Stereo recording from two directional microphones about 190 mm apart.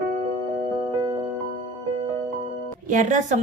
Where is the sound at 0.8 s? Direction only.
25° right (ahead or behind).